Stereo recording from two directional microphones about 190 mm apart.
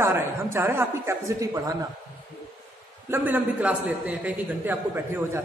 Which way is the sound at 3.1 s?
10° right (ahead or behind).